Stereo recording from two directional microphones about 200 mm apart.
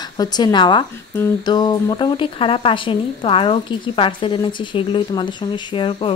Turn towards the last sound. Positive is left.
turn(degrees=25)  # may be behind; listen again after turning